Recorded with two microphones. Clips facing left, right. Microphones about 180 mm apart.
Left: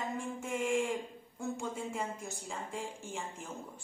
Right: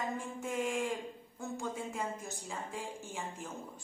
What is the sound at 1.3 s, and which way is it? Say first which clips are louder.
Speech: left 2 dB; centre (ahead or behind).